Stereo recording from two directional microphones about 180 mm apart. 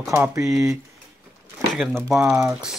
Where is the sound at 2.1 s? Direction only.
15° right (ahead or behind).